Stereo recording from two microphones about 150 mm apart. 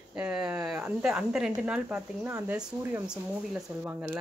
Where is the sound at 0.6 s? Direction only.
15° right (ahead or behind).